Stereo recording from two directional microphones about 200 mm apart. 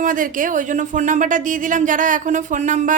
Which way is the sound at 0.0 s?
40° right (ahead or behind).